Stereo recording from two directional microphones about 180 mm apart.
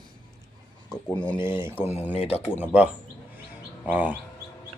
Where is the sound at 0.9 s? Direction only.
10° left (ahead or behind).